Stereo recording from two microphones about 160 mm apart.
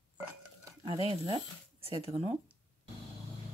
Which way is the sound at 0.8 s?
35° right (ahead or behind).